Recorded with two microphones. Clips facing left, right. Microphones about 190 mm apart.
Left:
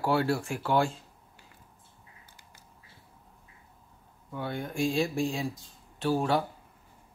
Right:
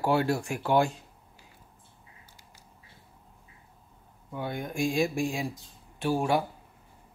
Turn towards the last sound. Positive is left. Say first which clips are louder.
# even
turn(degrees=-10)  # may be behind; listen again after turning